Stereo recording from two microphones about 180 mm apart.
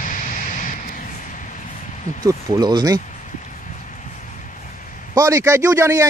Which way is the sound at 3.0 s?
45° left (ahead or behind).